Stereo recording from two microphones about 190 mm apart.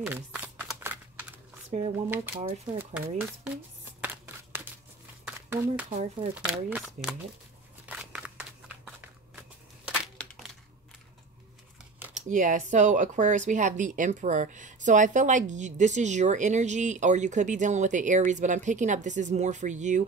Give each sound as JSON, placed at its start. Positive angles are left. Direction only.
{"t": 0.0, "sound": "a sound", "side_deg": -10}
{"t": 1.7, "sound": "speech", "side_deg": -35}
{"t": 2.0, "sound": "speech", "side_deg": -10}
{"t": 2.4, "sound": "speech", "side_deg": -30}
{"t": 5.2, "sound": "a sound", "side_deg": -5}
{"t": 5.9, "sound": "speech", "side_deg": -30}
{"t": 6.3, "sound": "speech", "side_deg": -5}
{"t": 7.8, "sound": "a sound", "side_deg": -5}
{"t": 10.2, "sound": "crushing", "side_deg": 5}
{"t": 12.1, "sound": "speech", "side_deg": -40}